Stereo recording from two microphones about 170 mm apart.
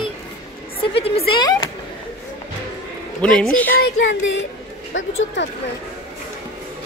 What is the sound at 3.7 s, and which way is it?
Speech, 75° left (ahead or behind).